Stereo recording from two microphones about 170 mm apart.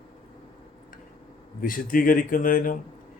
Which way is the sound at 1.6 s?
55° left (ahead or behind).